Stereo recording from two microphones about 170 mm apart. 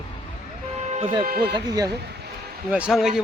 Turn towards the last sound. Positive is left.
turn(degrees=-5)  # may be behind; listen again after turning